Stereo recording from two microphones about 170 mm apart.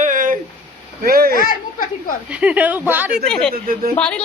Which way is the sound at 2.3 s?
10° right (ahead or behind).